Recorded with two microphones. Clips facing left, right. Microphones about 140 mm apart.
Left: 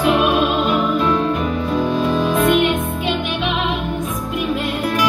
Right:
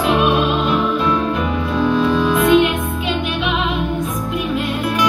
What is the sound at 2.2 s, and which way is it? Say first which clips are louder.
Music: right 1 dB; 45° left (ahead or behind).